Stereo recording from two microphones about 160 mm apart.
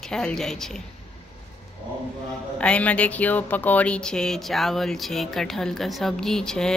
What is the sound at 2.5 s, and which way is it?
Speech, 5° left (ahead or behind).